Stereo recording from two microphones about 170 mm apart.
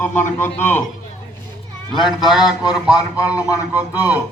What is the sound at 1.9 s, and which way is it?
A man's voice, centre (ahead or behind).